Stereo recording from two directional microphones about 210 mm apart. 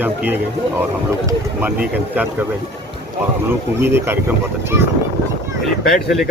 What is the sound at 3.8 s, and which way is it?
Speech, 10° right (ahead or behind).